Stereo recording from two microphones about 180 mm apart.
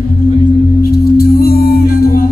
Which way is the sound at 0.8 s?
60° left (ahead or behind).